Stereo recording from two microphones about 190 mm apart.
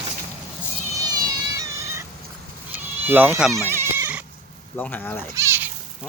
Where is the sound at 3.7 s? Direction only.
10° right (ahead or behind).